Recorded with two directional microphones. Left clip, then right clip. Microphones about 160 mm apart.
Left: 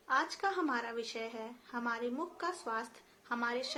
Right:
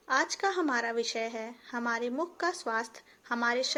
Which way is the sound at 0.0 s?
40° right (ahead or behind).